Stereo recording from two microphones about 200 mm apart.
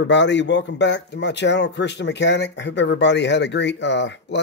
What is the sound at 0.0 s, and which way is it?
Speech, 60° left (ahead or behind).